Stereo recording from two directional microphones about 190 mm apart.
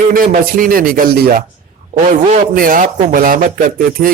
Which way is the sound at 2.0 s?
40° right (ahead or behind).